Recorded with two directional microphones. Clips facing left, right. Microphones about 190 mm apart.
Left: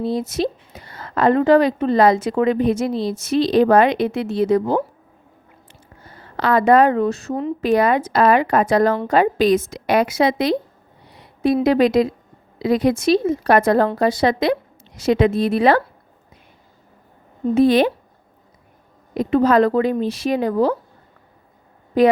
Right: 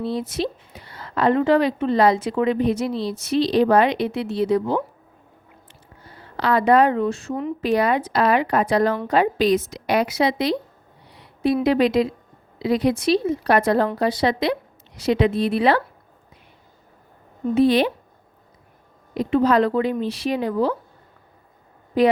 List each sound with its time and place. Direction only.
0.0 s a woman's voice: 45° left (ahead or behind)
6.3 s a woman's voice: 50° left (ahead or behind)
7.6 s a woman's voice: 50° left (ahead or behind)
17.5 s a woman's voice: 45° left (ahead or behind)
19.1 s a woman's voice: 45° left (ahead or behind)
22.0 s a woman's voice: 45° left (ahead or behind)